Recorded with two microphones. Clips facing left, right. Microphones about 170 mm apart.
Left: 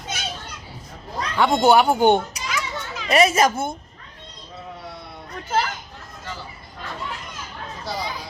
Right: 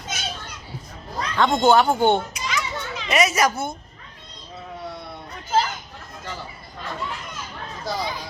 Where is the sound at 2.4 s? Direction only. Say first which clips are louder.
Right 1 dB; 5° left (ahead or behind).